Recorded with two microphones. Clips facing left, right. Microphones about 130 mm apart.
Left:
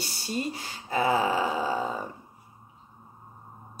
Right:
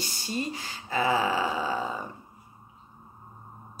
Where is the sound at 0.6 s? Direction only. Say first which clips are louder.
Left 2 dB; 45° left (ahead or behind).